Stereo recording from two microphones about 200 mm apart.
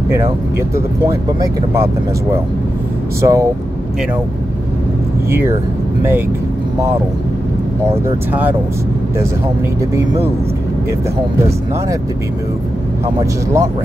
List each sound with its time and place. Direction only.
0.7 s speech: 15° right (ahead or behind)
3.2 s speech: 15° right (ahead or behind)
7.8 s speech: 10° right (ahead or behind)
13.0 s speech: 15° right (ahead or behind)